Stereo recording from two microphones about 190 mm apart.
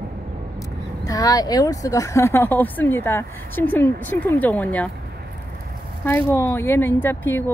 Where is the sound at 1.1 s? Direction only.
20° left (ahead or behind).